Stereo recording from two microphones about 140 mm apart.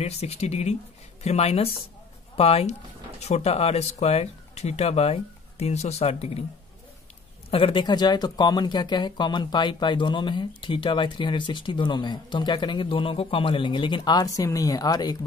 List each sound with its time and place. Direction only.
0.0 s speech: 50° left (ahead or behind)
7.5 s speech: 40° left (ahead or behind)